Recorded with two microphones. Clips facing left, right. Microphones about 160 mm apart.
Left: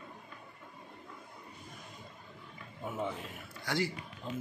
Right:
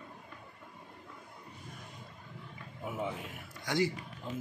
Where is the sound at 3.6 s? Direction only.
15° right (ahead or behind).